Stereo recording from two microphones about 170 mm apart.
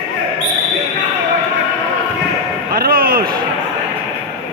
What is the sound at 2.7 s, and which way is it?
Speech, 60° right (ahead or behind).